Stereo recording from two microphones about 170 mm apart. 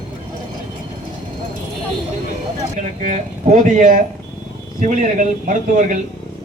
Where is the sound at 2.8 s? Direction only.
45° right (ahead or behind).